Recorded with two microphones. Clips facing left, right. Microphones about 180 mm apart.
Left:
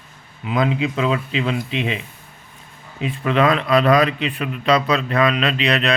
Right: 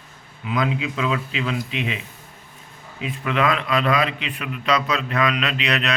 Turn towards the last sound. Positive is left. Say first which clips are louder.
# left 4 dB
turn(degrees=30)  # may be behind; listen again after turning